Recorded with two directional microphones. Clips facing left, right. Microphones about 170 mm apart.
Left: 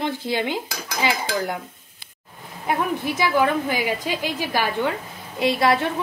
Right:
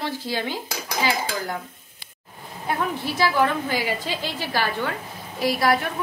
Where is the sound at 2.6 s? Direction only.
15° left (ahead or behind).